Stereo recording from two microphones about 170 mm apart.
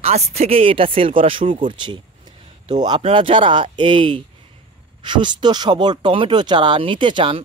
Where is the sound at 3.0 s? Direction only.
35° right (ahead or behind).